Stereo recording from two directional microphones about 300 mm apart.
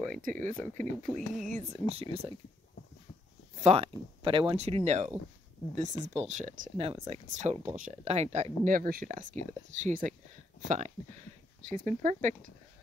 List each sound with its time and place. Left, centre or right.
0.1 s speech: right
1.1 s speech: centre
1.5 s speech: centre
3.6 s speech: centre